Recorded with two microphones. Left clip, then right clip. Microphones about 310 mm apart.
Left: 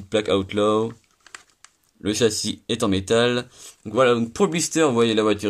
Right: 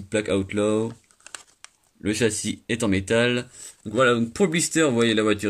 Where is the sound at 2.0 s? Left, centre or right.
Left.